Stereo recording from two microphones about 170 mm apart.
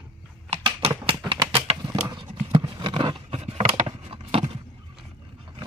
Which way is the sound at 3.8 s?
35° right (ahead or behind).